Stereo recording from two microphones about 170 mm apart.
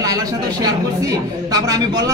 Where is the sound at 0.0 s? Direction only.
20° right (ahead or behind).